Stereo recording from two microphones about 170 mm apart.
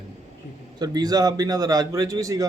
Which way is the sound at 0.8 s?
20° right (ahead or behind).